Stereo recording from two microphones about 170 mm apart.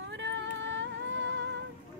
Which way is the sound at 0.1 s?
90° right.